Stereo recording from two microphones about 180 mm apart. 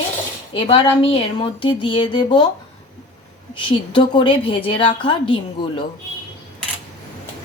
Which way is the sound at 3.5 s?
25° left (ahead or behind).